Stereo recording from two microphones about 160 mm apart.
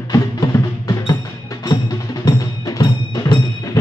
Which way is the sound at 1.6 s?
25° left (ahead or behind).